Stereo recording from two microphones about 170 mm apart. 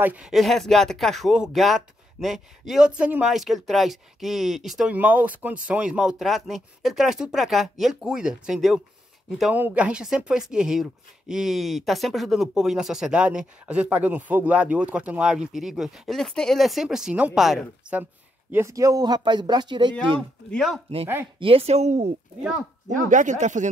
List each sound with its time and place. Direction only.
0.0 s speech: 5° right (ahead or behind)
18.5 s speech: 15° right (ahead or behind)
20.2 s speech: centre (ahead or behind)
21.4 s a woman's voice: 35° right (ahead or behind)